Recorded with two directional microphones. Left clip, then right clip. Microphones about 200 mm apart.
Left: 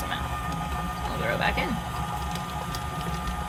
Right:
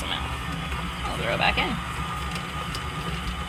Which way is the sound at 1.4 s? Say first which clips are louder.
Right 5 dB; 10° left (ahead or behind).